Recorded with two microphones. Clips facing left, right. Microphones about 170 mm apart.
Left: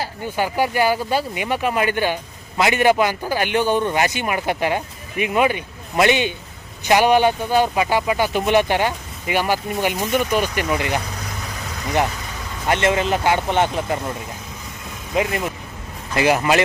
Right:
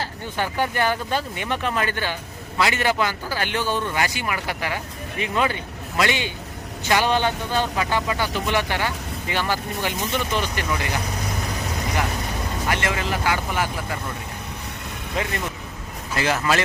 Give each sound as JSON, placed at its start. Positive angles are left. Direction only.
{"t": 0.0, "sound": "speech", "side_deg": 10}
{"t": 12.6, "sound": "speech", "side_deg": 20}
{"t": 15.1, "sound": "speech", "side_deg": 15}